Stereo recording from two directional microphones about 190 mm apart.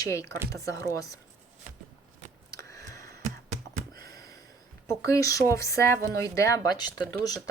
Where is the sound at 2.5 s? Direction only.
15° left (ahead or behind).